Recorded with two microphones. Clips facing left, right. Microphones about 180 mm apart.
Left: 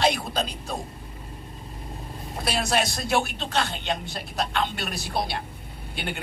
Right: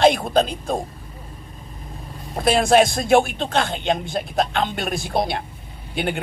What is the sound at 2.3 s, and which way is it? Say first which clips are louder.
Speech: right 10 dB; 50° right (ahead or behind).